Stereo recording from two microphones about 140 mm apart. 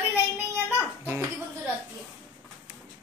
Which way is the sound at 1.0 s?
15° right (ahead or behind).